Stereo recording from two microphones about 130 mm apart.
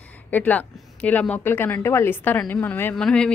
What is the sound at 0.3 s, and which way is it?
A woman's voice, 10° left (ahead or behind).